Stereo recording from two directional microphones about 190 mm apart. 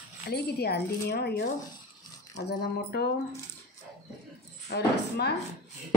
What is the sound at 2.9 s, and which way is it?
Speech, 60° left (ahead or behind).